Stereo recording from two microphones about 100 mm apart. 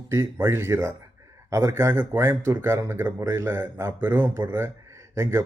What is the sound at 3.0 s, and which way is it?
Speech, 35° right (ahead or behind).